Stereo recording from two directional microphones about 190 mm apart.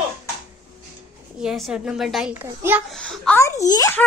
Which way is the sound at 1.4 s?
Centre (ahead or behind).